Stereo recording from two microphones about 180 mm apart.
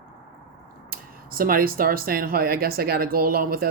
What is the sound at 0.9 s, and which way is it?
Speech, 55° right (ahead or behind).